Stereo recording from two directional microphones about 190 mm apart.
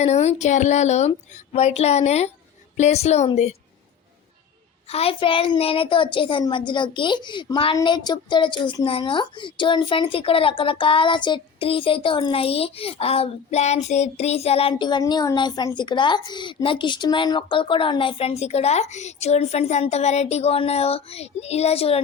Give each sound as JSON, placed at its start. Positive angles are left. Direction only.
{"t": 0.0, "sound": "speech", "side_deg": 35}
{"t": 4.9, "sound": "a woman's voice", "side_deg": 30}